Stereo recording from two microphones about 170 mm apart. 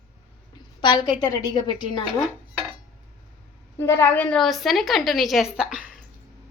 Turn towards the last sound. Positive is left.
turn(degrees=-5)  # may be behind; listen again after turning